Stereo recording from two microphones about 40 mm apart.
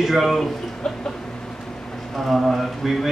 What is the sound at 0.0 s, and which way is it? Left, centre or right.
Speech, centre.